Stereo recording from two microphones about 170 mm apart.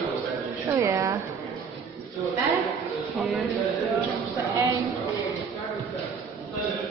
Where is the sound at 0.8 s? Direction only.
15° right (ahead or behind).